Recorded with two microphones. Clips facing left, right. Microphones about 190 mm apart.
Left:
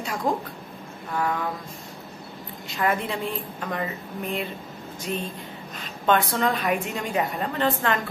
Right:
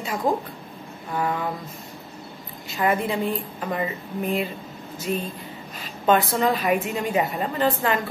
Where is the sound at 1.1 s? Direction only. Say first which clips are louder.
Right 1 dB; 10° right (ahead or behind).